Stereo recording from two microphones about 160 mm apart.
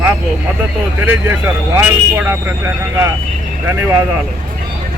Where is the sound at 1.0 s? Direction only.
10° right (ahead or behind).